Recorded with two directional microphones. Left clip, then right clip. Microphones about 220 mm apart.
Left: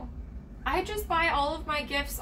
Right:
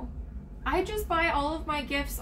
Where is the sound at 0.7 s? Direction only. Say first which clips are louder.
Right 1 dB; 5° right (ahead or behind).